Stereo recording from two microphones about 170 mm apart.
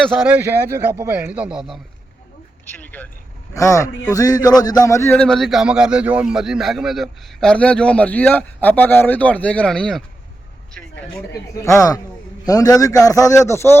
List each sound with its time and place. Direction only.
0.0 s a man's voice: centre (ahead or behind)
2.7 s a man's voice: 10° left (ahead or behind)
11.5 s a man's voice: 20° left (ahead or behind)